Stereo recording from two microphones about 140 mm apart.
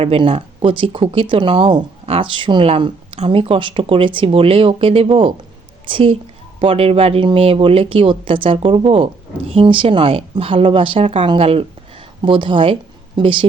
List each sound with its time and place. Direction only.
0.0 s a woman's voice: 40° right (ahead or behind)